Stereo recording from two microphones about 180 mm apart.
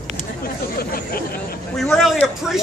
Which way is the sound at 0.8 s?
55° left (ahead or behind).